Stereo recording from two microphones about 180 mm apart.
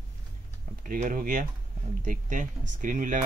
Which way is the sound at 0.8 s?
45° right (ahead or behind).